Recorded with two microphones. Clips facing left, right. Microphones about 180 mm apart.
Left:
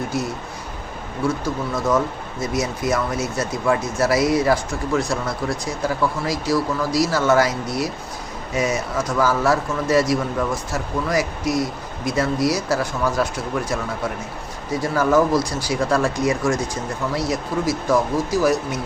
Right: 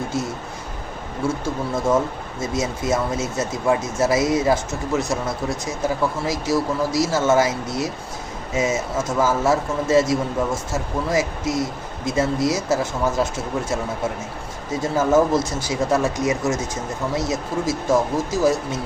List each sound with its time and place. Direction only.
1.2 s a man's voice: 25° right (ahead or behind)